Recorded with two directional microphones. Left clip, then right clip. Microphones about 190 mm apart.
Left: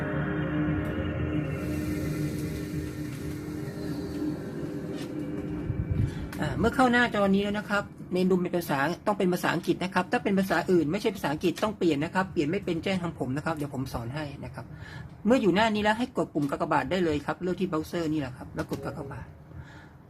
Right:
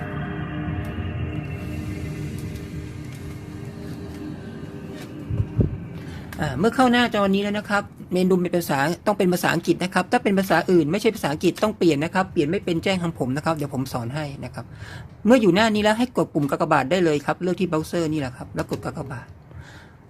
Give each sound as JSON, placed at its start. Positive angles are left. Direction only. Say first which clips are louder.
{"t": 0.1, "sound": "music", "louder": "left 1 dB", "side_deg": 40}
{"t": 6.4, "sound": "a woman's voice", "louder": "right 5 dB", "side_deg": -35}
{"t": 15.3, "sound": "a woman's voice", "louder": "right 6 dB", "side_deg": -40}